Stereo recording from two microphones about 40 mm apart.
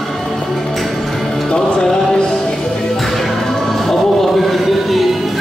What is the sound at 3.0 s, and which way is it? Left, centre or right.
Music, centre.